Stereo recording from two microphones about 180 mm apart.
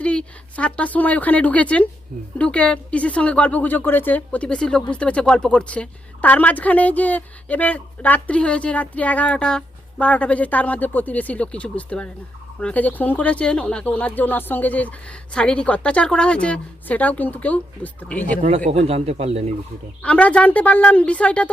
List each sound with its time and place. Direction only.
0.0 s a woman's voice: 5° left (ahead or behind)
18.4 s speech: 35° right (ahead or behind)
20.0 s a woman's voice: 5° left (ahead or behind)